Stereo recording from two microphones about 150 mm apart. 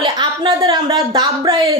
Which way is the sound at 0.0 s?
30° right (ahead or behind).